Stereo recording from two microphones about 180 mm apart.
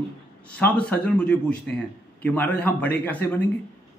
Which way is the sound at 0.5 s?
10° left (ahead or behind).